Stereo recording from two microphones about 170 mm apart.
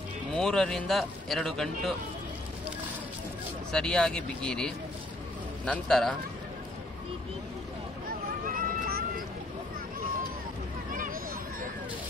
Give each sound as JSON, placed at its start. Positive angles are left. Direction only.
{"t": 0.3, "sound": "speech", "side_deg": 5}
{"t": 3.7, "sound": "speech", "side_deg": 5}
{"t": 8.5, "sound": "a sound", "side_deg": -60}